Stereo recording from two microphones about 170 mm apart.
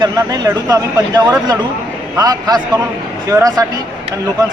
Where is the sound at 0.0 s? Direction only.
20° right (ahead or behind).